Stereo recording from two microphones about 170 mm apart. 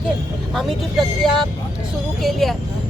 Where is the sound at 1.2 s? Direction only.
Centre (ahead or behind).